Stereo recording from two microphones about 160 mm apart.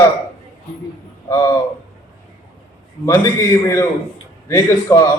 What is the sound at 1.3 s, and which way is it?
Speech, 20° left (ahead or behind).